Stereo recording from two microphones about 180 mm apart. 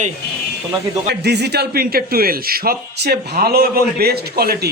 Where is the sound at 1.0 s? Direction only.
65° right (ahead or behind).